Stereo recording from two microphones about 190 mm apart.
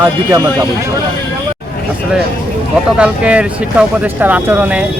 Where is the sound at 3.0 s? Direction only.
5° right (ahead or behind).